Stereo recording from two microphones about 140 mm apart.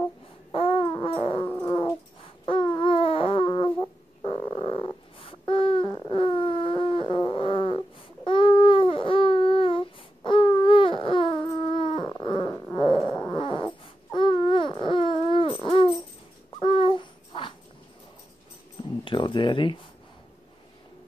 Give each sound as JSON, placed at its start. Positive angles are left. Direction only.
{"t": 0.5, "sound": "a sound", "side_deg": 40}
{"t": 1.0, "sound": "dog", "side_deg": 40}
{"t": 1.4, "sound": "dog", "side_deg": 15}
{"t": 2.7, "sound": "baby cry", "side_deg": 40}
{"t": 3.4, "sound": "a sound", "side_deg": 35}
{"t": 10.5, "sound": "baby cry", "side_deg": 40}
{"t": 12.1, "sound": "a sound", "side_deg": 35}
{"t": 13.4, "sound": "cat", "side_deg": 35}
{"t": 14.1, "sound": "baby cry", "side_deg": 35}
{"t": 16.5, "sound": "babbling", "side_deg": 35}
{"t": 19.0, "sound": "keys jangling", "side_deg": 35}